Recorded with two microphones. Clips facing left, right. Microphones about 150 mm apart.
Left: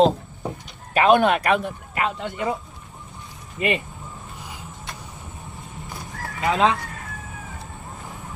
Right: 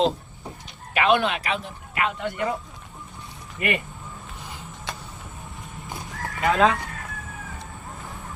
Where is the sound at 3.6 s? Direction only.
25° left (ahead or behind).